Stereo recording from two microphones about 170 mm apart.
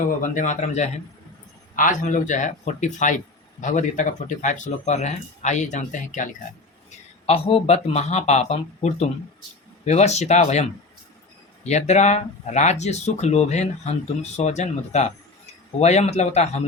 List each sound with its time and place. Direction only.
0.0 s speech: 50° left (ahead or behind)
7.3 s speech: 35° left (ahead or behind)